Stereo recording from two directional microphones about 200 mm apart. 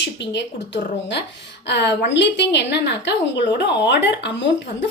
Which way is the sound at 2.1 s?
60° left (ahead or behind).